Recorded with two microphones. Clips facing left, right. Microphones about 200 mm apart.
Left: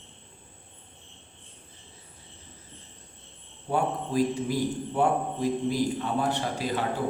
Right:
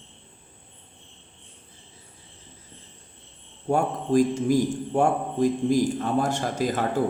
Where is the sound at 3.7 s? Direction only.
45° right (ahead or behind).